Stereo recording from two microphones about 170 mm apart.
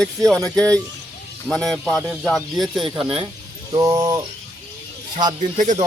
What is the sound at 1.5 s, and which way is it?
Speech, 5° left (ahead or behind).